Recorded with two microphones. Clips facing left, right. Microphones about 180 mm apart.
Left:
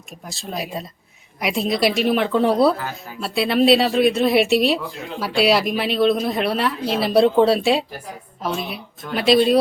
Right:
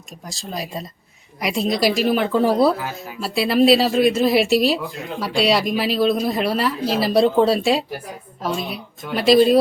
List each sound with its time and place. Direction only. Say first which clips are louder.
0.3 s speech: left 1 dB; centre (ahead or behind)